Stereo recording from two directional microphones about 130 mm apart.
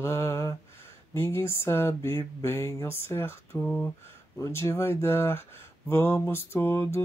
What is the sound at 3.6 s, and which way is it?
Speech, 10° left (ahead or behind).